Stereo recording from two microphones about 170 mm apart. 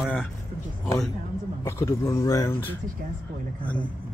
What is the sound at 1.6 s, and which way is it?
Speech, 15° left (ahead or behind).